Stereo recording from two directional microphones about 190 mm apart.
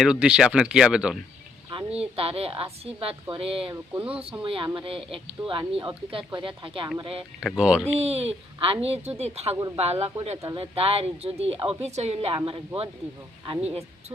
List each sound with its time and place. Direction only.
0.0 s speech: 5° right (ahead or behind)
1.7 s a woman's voice: 30° right (ahead or behind)
3.9 s speech: 5° right (ahead or behind)
4.2 s speech: 30° right (ahead or behind)
7.4 s speech: 5° right (ahead or behind)
7.9 s a woman's voice: 35° right (ahead or behind)